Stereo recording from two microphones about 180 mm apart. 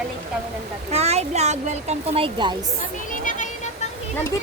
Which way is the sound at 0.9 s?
35° right (ahead or behind).